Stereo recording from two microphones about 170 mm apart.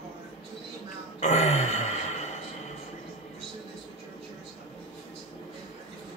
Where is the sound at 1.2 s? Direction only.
40° left (ahead or behind).